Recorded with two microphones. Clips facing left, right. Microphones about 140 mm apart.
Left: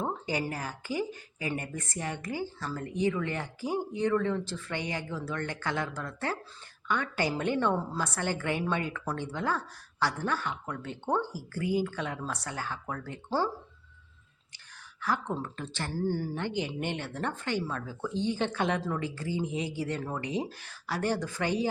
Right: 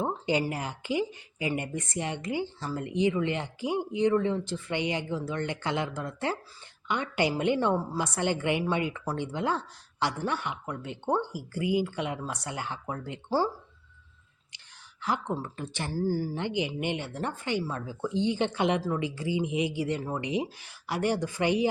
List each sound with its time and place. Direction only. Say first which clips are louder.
0.0 s a sound: right 4 dB; 20° right (ahead or behind)
0.4 s speech: right 3 dB; 20° right (ahead or behind)
15.0 s speech: right 1 dB; 15° right (ahead or behind)